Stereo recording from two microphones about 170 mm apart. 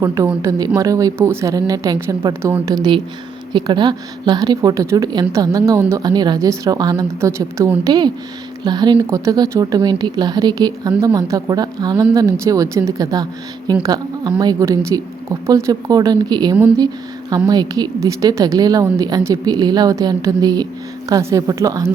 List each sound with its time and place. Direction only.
0.0 s a woman's voice: 20° right (ahead or behind)